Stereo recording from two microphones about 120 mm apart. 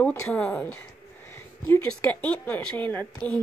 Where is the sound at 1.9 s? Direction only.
10° left (ahead or behind).